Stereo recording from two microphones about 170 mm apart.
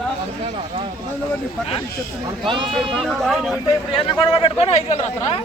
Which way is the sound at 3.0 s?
5° left (ahead or behind).